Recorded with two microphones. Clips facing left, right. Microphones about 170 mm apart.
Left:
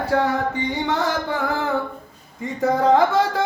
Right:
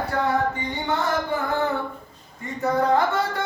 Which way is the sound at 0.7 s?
90° left.